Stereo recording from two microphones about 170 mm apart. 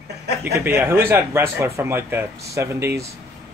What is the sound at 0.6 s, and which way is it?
Speech, 15° right (ahead or behind).